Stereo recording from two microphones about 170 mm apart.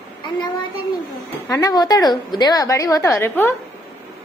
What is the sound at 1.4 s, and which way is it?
A woman's voice, 20° left (ahead or behind).